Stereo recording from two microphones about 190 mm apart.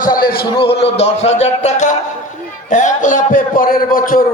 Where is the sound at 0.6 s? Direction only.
30° left (ahead or behind).